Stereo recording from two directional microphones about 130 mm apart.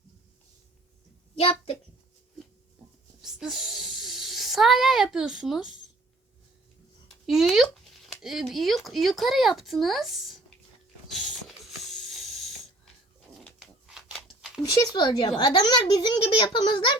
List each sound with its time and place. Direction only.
1.4 s a woman's voice: 45° left (ahead or behind)
3.2 s speech: 5° right (ahead or behind)
7.3 s speech: centre (ahead or behind)
11.1 s ratchet: centre (ahead or behind)
13.4 s a sound: 5° right (ahead or behind)
14.6 s a child's voice: 30° left (ahead or behind)